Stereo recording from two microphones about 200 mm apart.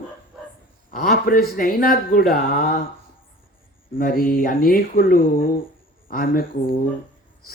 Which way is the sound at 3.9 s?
45° left (ahead or behind).